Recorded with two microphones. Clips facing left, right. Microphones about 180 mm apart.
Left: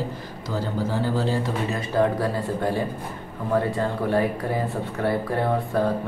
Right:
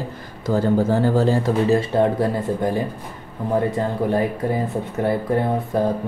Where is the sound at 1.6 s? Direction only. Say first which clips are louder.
Right 3 dB; 30° right (ahead or behind).